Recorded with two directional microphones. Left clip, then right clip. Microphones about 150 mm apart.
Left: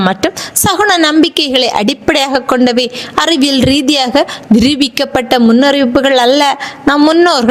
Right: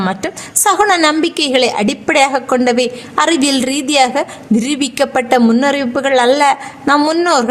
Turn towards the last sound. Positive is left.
turn(degrees=40)  # may be behind; listen again after turning